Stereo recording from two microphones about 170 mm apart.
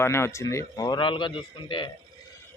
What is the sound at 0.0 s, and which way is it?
Speech, 15° left (ahead or behind).